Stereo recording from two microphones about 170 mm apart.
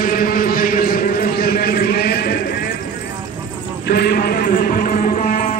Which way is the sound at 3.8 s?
75° left (ahead or behind).